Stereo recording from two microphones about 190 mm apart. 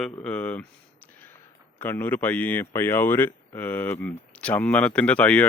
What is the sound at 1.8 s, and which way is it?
Speech, 10° left (ahead or behind).